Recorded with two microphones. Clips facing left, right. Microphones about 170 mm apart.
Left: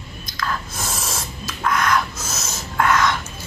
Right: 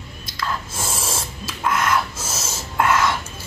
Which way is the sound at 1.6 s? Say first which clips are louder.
Left 1 dB; 5° right (ahead or behind).